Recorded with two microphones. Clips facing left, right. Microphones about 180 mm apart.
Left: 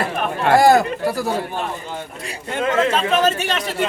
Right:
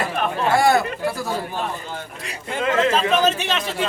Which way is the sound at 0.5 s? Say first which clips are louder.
Left 6 dB; 40° left (ahead or behind).